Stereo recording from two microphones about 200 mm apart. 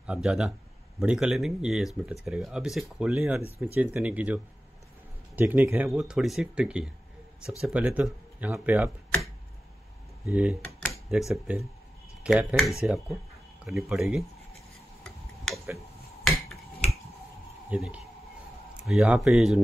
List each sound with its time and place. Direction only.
0.0 s speech: 5° right (ahead or behind)
10.2 s speech: 5° right (ahead or behind)
15.4 s a sound: centre (ahead or behind)
16.3 s finger snapping: centre (ahead or behind)
17.6 s speech: 5° right (ahead or behind)